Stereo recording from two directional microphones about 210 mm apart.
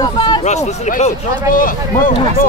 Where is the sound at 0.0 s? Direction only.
20° left (ahead or behind).